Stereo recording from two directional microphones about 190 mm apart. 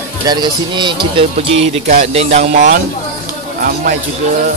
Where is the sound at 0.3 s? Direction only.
25° right (ahead or behind); by 2.8 s 40° right (ahead or behind).